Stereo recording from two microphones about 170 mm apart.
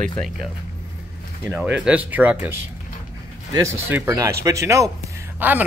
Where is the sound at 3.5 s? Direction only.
15° right (ahead or behind).